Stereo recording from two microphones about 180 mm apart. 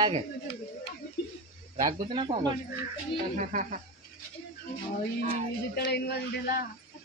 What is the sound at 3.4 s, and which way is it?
Speech, 45° right (ahead or behind).